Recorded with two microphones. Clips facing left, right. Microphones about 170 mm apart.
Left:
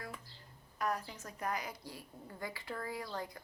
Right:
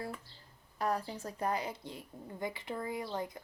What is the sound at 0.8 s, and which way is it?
A woman's voice, 30° right (ahead or behind).